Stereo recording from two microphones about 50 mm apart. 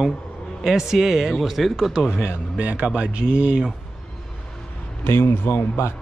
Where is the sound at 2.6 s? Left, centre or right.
Right.